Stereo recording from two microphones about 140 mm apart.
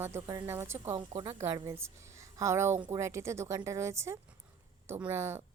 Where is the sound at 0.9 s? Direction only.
35° right (ahead or behind).